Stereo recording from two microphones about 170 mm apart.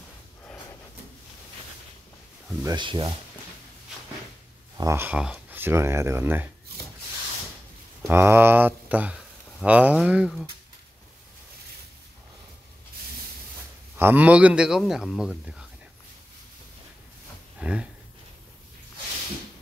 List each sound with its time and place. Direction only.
2.6 s speech: 25° right (ahead or behind)
4.7 s speech: 15° right (ahead or behind)
8.1 s speech: 15° right (ahead or behind)
13.9 s a man's voice: 10° right (ahead or behind)
17.6 s a sound: 5° right (ahead or behind)